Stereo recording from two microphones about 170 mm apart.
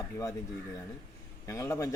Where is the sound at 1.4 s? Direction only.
20° left (ahead or behind).